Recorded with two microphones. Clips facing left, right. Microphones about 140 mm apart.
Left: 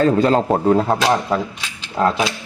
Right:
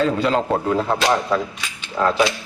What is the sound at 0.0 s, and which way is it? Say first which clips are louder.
Speech: left 4 dB; 45° left (ahead or behind).